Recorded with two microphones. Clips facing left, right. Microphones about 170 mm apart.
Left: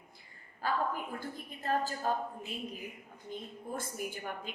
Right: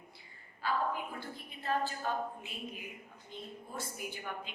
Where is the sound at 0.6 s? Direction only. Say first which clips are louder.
Left 1 dB; 45° left (ahead or behind).